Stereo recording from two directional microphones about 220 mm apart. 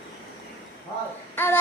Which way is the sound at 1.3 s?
10° left (ahead or behind).